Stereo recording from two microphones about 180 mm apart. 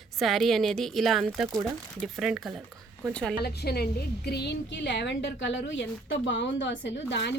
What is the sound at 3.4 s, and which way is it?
A woman's voice, 65° left (ahead or behind).